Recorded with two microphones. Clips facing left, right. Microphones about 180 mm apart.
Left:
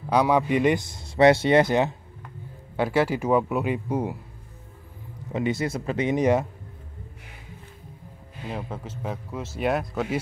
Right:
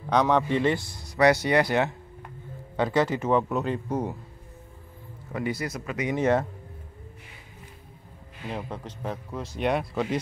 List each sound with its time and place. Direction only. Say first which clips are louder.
0.1 s speech: left 2 dB; 10° left (ahead or behind)
2.8 s a man's voice: left 1 dB; 10° left (ahead or behind)
5.3 s speech: left 4 dB; 25° left (ahead or behind)
6.1 s a man's voice: left 1 dB; 15° left (ahead or behind)
8.5 s speech: left 1 dB; 5° left (ahead or behind)